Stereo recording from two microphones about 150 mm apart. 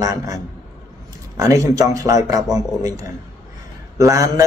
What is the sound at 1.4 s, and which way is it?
A man's voice, 20° right (ahead or behind).